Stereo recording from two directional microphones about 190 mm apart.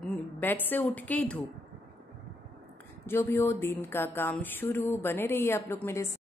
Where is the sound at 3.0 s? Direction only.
15° left (ahead or behind).